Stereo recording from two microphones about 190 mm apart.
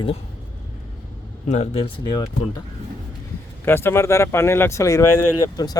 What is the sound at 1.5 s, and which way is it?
Speech, 35° left (ahead or behind).